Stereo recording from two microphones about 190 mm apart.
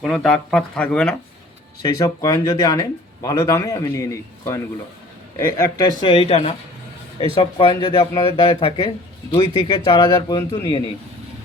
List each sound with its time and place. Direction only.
0.0 s speech: centre (ahead or behind)
1.8 s speech: 20° left (ahead or behind)
6.0 s speech: 30° left (ahead or behind)